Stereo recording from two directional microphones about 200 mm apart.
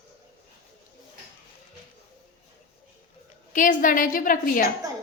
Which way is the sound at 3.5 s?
40° left (ahead or behind).